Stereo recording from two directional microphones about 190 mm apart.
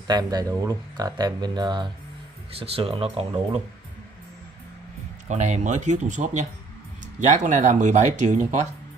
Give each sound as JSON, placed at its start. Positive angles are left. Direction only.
{"t": 0.0, "sound": "speech", "side_deg": -20}
{"t": 5.3, "sound": "speech", "side_deg": -40}